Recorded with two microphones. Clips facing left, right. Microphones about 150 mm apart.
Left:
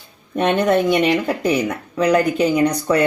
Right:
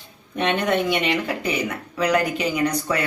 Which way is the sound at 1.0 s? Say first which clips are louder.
Left 6 dB; 45° left (ahead or behind).